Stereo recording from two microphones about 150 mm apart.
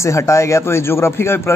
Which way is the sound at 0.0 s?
20° left (ahead or behind).